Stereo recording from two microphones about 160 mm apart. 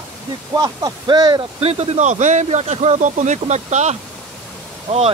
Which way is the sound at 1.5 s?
40° right (ahead or behind).